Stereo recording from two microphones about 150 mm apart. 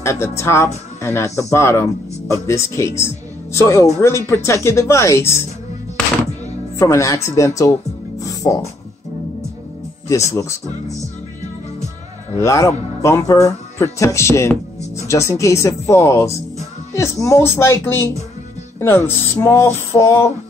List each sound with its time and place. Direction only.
0.0 s speech: 20° left (ahead or behind)
6.8 s speech: 20° left (ahead or behind)
10.0 s speech: 20° left (ahead or behind)
12.4 s speech: 20° left (ahead or behind)
16.9 s music: 20° left (ahead or behind)